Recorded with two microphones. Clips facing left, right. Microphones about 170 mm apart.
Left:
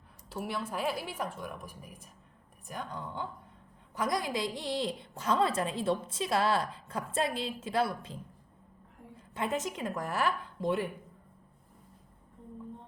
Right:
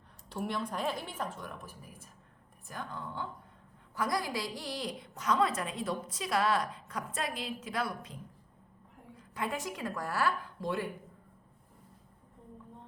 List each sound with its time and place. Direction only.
0.3 s a woman's voice: 5° left (ahead or behind); by 8.2 s 30° left (ahead or behind)
9.3 s a woman's voice: 25° left (ahead or behind)